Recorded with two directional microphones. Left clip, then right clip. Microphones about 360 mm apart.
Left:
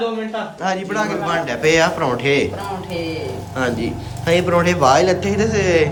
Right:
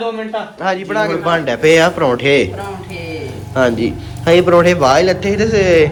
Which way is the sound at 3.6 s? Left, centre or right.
Centre.